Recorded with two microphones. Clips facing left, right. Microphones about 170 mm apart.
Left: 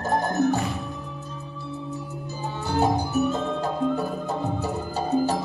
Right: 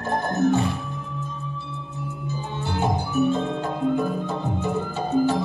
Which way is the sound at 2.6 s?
40° left (ahead or behind).